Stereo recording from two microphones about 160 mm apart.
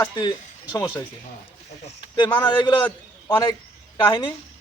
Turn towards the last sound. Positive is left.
turn(degrees=25)  # may be behind; listen again after turning